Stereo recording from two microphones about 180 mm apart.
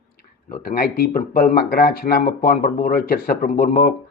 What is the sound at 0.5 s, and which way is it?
A man's voice, 55° left (ahead or behind).